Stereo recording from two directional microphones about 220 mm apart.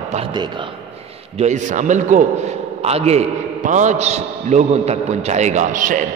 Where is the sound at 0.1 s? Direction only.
20° right (ahead or behind).